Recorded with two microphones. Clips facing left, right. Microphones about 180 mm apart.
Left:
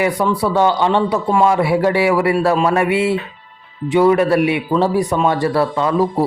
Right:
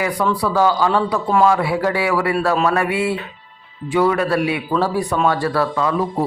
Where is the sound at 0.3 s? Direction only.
25° left (ahead or behind).